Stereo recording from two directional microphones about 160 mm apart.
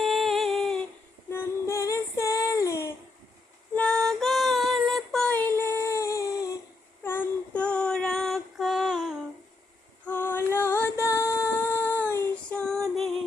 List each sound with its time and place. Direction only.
0.0 s humming: centre (ahead or behind)
1.3 s female singing: 15° left (ahead or behind)
3.8 s female singing: 5° left (ahead or behind)
7.0 s child singing: 15° left (ahead or behind); by 9.2 s 5° right (ahead or behind)
10.1 s music: 15° left (ahead or behind)